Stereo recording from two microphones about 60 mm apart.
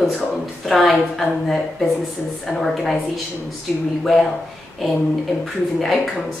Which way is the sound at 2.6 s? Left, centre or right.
Centre.